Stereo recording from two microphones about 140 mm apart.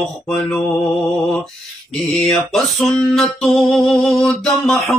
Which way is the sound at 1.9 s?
Centre (ahead or behind).